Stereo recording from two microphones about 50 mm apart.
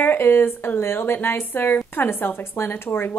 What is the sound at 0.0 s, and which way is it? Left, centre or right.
A woman's voice, left.